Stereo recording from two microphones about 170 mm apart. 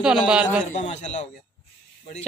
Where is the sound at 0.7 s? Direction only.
40° left (ahead or behind).